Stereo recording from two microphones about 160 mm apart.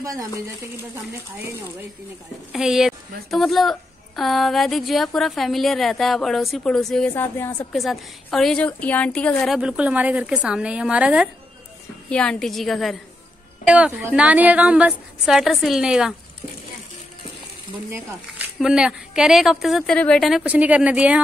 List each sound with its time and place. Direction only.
0.0 s speech: 20° right (ahead or behind)
2.5 s a woman's voice: 5° right (ahead or behind); by 7.6 s 15° left (ahead or behind)
7.7 s a woman's voice: centre (ahead or behind)
12.1 s a woman's voice: 5° left (ahead or behind)
18.6 s a woman's voice: 5° right (ahead or behind)